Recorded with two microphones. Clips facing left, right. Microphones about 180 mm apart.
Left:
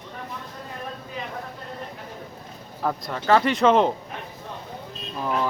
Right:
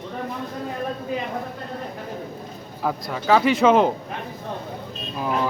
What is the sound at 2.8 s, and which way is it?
Speech, 5° right (ahead or behind).